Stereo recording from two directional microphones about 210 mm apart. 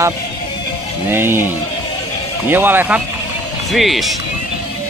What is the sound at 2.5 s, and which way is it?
Speech, 10° right (ahead or behind).